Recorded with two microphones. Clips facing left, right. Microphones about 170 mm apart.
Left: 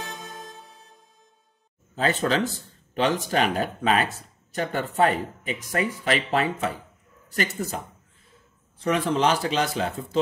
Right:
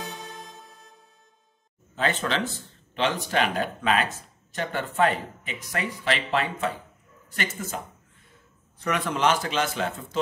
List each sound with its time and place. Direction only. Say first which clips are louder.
2.0 s speech: left 3 dB; 40° left (ahead or behind)
8.7 s speech: left 4 dB; 30° left (ahead or behind)